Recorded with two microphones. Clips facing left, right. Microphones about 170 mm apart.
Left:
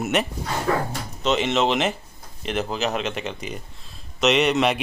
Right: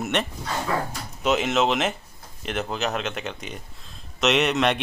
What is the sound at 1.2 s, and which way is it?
A man's voice, centre (ahead or behind).